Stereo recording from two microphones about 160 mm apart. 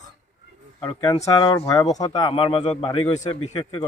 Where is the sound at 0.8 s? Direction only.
30° left (ahead or behind).